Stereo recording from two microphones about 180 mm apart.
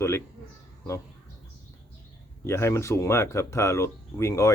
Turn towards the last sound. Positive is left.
turn(degrees=15)  # may be behind; listen again after turning